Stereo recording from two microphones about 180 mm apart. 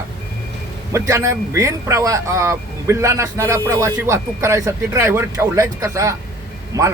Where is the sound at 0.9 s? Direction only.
15° right (ahead or behind).